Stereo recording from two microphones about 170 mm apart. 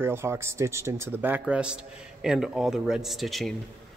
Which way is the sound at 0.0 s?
15° right (ahead or behind).